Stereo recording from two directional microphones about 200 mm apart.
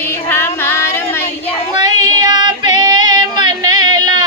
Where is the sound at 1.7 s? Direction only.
20° right (ahead or behind).